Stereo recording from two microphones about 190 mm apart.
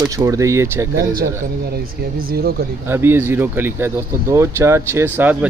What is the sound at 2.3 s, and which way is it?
Speech, 55° right (ahead or behind).